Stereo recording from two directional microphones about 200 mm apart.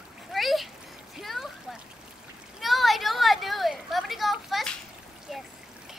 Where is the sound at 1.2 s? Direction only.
Centre (ahead or behind).